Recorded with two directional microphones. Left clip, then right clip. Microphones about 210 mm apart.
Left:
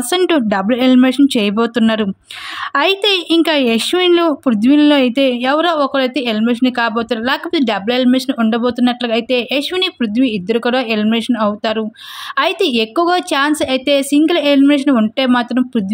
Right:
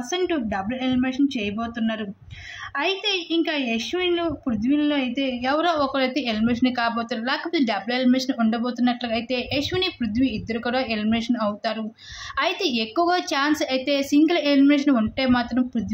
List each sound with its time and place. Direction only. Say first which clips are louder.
0.1 s a woman's voice: left 11 dB; 50° left (ahead or behind)